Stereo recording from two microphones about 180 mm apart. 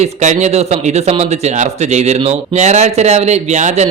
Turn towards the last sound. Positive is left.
turn(degrees=-40)  # may be behind; listen again after turning